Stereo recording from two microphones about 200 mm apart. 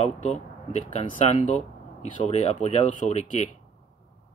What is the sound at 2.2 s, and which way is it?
Speech, 35° left (ahead or behind).